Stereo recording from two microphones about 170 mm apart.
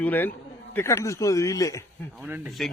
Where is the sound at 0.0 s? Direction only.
10° left (ahead or behind).